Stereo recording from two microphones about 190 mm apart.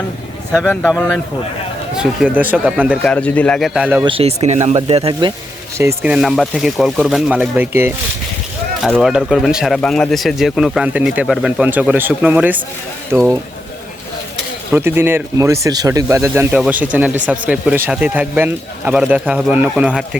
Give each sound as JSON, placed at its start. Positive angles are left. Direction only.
{"t": 0.5, "sound": "speech", "side_deg": 5}
{"t": 2.0, "sound": "speech", "side_deg": -5}
{"t": 3.0, "sound": "speech", "side_deg": 5}
{"t": 4.0, "sound": "speech", "side_deg": -30}
{"t": 5.7, "sound": "speech", "side_deg": -15}
{"t": 8.8, "sound": "speech", "side_deg": 0}
{"t": 14.7, "sound": "speech", "side_deg": -10}